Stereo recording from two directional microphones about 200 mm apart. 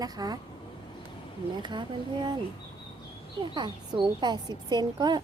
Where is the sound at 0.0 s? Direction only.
20° right (ahead or behind).